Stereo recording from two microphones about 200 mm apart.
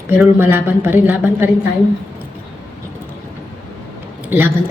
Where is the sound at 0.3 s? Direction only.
10° right (ahead or behind).